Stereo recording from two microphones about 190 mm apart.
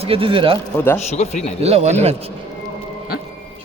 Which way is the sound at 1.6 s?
35° right (ahead or behind).